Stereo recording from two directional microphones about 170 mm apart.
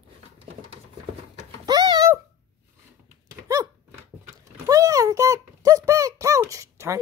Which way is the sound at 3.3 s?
20° right (ahead or behind).